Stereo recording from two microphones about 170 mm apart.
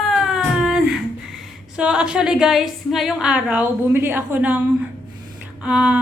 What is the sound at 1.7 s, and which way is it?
A woman's voice, 5° right (ahead or behind).